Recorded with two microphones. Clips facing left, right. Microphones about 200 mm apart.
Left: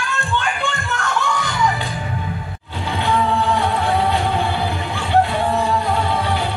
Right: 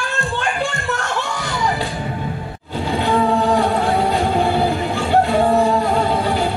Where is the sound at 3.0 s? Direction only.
40° right (ahead or behind).